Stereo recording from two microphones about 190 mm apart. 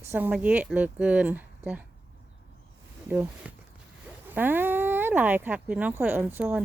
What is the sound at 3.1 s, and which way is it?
Speech, 10° right (ahead or behind).